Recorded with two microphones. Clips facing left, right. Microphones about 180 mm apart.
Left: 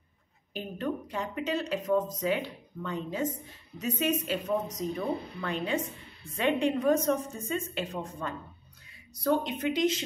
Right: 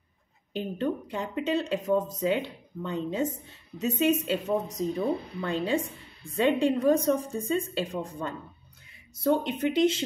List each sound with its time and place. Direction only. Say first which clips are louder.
0.5 s a woman's voice: right 4 dB; 25° right (ahead or behind)